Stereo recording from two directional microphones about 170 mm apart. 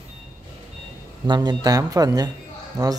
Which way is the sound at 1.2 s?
25° right (ahead or behind).